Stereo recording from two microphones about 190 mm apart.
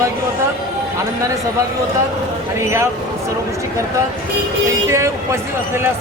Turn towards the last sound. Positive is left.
turn(degrees=-15)  # may be behind; listen again after turning